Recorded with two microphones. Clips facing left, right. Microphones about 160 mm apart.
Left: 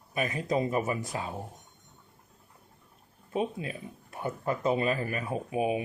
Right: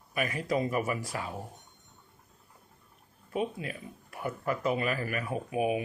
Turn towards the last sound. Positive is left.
turn(degrees=25)  # may be behind; listen again after turning